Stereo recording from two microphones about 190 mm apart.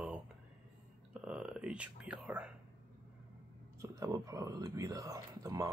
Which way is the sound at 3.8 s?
15° right (ahead or behind).